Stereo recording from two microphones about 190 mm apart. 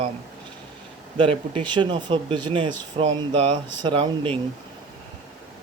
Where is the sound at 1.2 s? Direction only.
25° right (ahead or behind).